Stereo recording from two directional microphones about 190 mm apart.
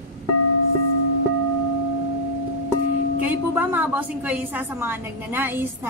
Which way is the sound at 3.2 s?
10° right (ahead or behind).